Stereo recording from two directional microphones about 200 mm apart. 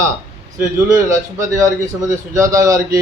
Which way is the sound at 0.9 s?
15° right (ahead or behind).